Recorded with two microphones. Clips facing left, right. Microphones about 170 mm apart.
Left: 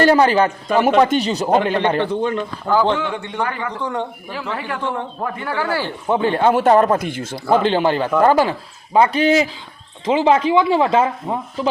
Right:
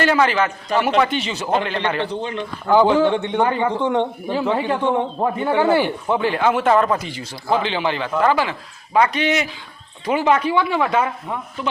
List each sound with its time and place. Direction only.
0.0 s speech: 35° left (ahead or behind)
2.6 s speech: 10° right (ahead or behind)
3.2 s a man's voice: 20° right (ahead or behind)
6.1 s speech: 30° left (ahead or behind)
8.9 s speech: 30° left (ahead or behind)